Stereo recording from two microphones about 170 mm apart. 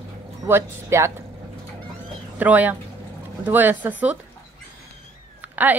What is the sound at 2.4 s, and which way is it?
Speech, 10° right (ahead or behind).